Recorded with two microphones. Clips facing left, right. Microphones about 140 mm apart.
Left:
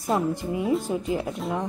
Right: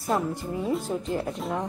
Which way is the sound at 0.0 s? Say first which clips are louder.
Left 2 dB; centre (ahead or behind).